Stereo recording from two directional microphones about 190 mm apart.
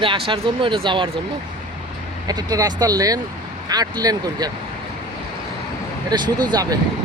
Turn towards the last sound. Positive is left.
turn(degrees=-20)  # may be behind; listen again after turning